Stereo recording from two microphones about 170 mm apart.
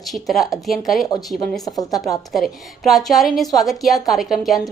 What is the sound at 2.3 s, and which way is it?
A woman's voice, centre (ahead or behind).